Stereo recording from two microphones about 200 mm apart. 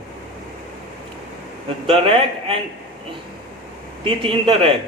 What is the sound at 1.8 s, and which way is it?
Speech, 25° right (ahead or behind).